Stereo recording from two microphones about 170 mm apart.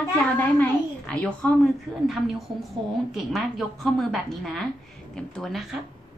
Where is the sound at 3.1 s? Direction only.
Centre (ahead or behind).